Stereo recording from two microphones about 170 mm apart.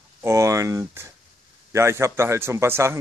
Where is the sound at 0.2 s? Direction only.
15° right (ahead or behind).